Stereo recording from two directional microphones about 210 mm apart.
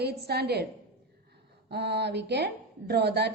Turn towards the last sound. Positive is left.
turn(degrees=-50)  # may be behind; listen again after turning